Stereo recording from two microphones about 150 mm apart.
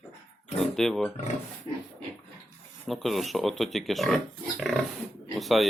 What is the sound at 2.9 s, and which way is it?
Speech, centre (ahead or behind).